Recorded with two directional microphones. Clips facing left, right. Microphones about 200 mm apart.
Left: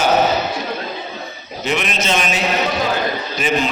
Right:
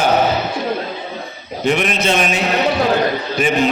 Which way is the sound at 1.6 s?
50° right (ahead or behind).